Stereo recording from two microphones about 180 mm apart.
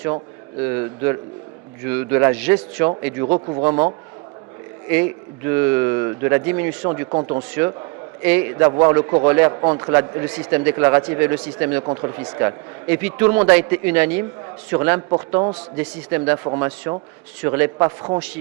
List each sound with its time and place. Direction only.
0.6 s a man's voice: 15° right (ahead or behind)
3.2 s speech: 30° right (ahead or behind)
4.9 s a man's voice: 10° right (ahead or behind)
11.8 s speech: 25° right (ahead or behind)
12.1 s a man's voice: 15° right (ahead or behind)
15.1 s speech: 25° right (ahead or behind)
15.8 s a man's voice: 10° right (ahead or behind)